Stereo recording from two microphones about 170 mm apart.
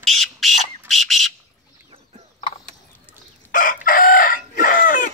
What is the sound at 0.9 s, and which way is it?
Bird, centre (ahead or behind).